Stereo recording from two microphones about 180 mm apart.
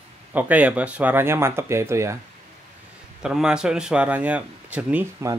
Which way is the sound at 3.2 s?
5° right (ahead or behind).